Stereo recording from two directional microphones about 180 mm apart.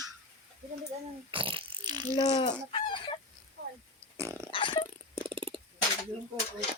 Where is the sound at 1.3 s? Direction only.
30° right (ahead or behind).